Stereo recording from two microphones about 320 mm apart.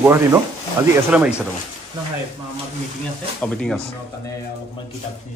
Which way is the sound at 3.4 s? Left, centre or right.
Centre.